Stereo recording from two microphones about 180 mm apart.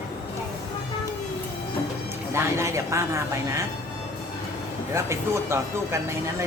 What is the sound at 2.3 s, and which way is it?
Speech, 15° right (ahead or behind).